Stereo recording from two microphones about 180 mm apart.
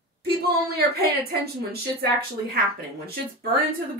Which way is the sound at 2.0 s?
60° right (ahead or behind).